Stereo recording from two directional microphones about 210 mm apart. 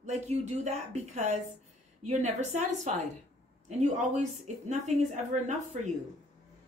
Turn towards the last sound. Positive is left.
turn(degrees=-35)  # may be behind; listen again after turning